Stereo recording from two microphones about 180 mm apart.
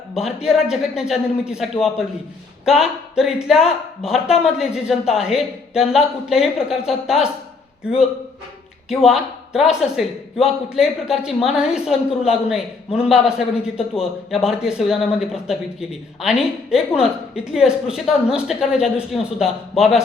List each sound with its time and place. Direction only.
0.1 s a man's voice: centre (ahead or behind)
8.9 s speech: centre (ahead or behind)
13.7 s a man's voice: 35° left (ahead or behind)
14.3 s speech: centre (ahead or behind)